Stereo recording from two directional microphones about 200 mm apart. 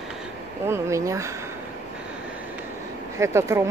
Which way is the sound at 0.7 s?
15° right (ahead or behind).